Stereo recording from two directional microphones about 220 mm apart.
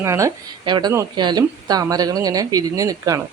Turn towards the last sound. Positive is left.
turn(degrees=-15)  # may be behind; listen again after turning